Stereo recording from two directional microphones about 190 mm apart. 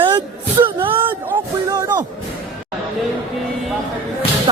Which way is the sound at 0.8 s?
25° right (ahead or behind).